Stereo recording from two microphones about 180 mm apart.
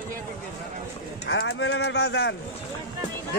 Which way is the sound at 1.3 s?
85° left.